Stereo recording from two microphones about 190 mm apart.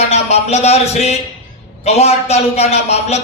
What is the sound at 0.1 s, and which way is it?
A man's voice, 35° left (ahead or behind).